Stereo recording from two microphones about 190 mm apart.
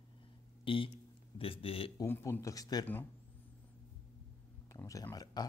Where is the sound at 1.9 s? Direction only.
15° left (ahead or behind).